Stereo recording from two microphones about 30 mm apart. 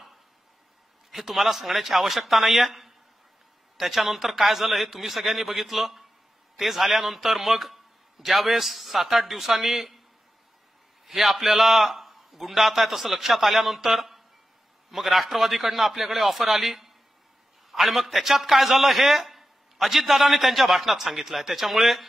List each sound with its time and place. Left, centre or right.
1.1 s a man's voice: centre
11.1 s a man's voice: centre